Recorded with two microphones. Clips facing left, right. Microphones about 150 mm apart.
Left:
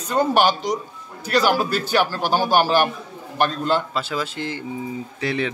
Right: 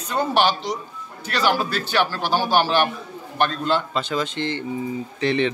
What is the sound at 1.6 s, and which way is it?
Speech, 45° left (ahead or behind).